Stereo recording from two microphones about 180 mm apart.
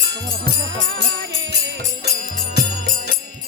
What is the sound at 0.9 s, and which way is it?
Music, 65° right (ahead or behind).